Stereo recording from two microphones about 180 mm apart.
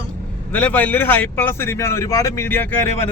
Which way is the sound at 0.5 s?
10° left (ahead or behind).